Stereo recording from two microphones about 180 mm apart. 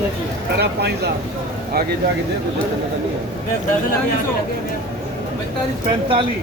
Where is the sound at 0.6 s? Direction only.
65° right (ahead or behind).